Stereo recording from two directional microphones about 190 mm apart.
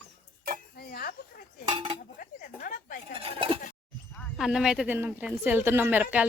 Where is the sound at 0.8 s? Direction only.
50° left (ahead or behind).